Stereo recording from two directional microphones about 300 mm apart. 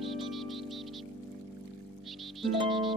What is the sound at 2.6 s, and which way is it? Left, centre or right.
Music, centre.